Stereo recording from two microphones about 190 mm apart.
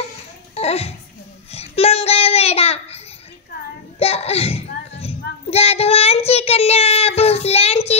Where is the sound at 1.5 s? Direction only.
30° left (ahead or behind).